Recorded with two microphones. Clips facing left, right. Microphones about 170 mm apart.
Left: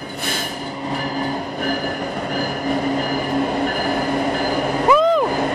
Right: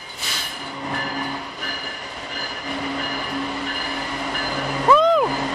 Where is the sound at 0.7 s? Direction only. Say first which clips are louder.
Left 2 dB; 25° left (ahead or behind); by 4.7 s 50° left (ahead or behind).